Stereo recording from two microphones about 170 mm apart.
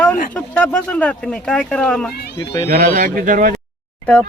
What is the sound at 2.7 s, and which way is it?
Speech, 50° right (ahead or behind).